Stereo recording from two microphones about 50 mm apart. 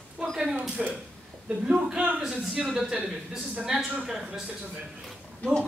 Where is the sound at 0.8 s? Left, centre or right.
Centre.